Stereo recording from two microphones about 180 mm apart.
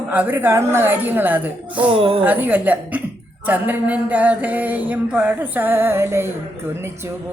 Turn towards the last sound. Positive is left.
turn(degrees=-15)  # may be behind; listen again after turning